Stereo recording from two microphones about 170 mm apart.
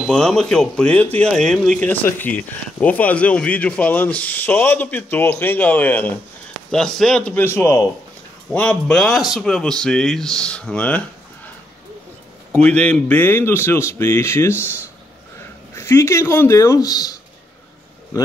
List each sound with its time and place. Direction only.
0.0 s speech: 5° left (ahead or behind)
12.6 s speech: 5° left (ahead or behind)
15.7 s speech: 15° left (ahead or behind)